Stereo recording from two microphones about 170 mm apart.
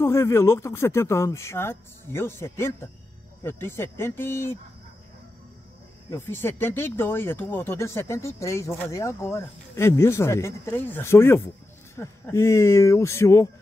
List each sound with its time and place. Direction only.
0.0 s speech: 15° left (ahead or behind)
6.0 s speech: 15° left (ahead or behind)